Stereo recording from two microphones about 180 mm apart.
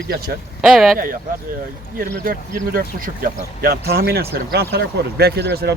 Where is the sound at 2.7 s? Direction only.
50° right (ahead or behind).